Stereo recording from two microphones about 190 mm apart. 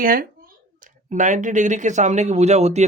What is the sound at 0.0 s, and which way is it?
Speech, 50° right (ahead or behind).